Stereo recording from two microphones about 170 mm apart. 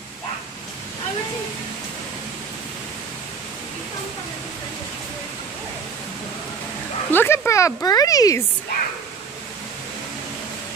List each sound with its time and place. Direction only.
7.1 s speech: 15° left (ahead or behind)